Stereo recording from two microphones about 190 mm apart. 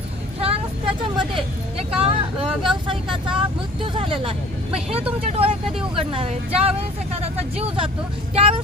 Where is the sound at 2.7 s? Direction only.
25° right (ahead or behind).